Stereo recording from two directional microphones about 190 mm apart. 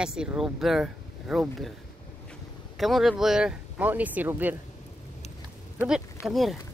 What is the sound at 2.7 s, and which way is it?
Speech, centre (ahead or behind).